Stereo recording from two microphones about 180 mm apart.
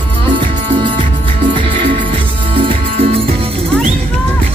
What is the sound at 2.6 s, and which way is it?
Music, 30° right (ahead or behind).